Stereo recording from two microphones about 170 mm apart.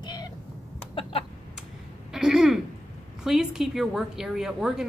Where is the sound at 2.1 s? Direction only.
5° right (ahead or behind).